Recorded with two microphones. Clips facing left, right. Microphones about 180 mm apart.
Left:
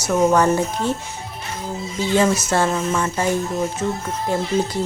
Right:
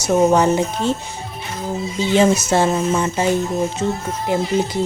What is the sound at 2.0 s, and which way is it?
Speech, 20° right (ahead or behind).